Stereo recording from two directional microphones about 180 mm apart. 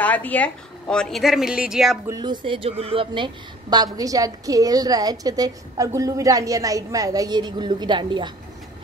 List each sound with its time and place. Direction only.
0.0 s a woman's voice: 10° left (ahead or behind)
2.0 s a woman's voice: 20° right (ahead or behind)
3.7 s a woman's voice: 20° right (ahead or behind)